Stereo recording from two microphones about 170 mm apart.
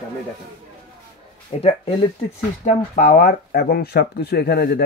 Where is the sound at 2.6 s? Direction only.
50° left (ahead or behind).